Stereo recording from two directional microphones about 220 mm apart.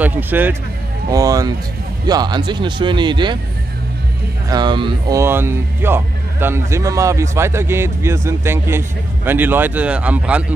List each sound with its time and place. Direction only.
0.0 s speech: 10° right (ahead or behind)
4.5 s speech: 20° right (ahead or behind)